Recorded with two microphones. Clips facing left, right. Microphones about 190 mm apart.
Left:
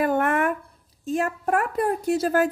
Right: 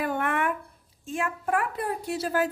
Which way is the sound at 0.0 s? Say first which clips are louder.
Left 6 dB; 45° left (ahead or behind).